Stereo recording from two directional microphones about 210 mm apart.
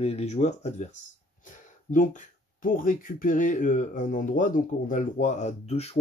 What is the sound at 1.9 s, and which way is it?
Speech, 40° left (ahead or behind).